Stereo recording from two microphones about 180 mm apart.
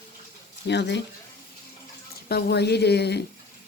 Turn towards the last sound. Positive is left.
turn(degrees=65)  # may be behind; listen again after turning